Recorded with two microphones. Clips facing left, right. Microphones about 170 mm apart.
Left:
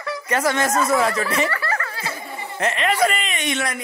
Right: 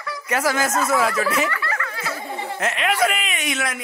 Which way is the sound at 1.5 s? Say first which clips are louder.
Left 2 dB; 35° left (ahead or behind).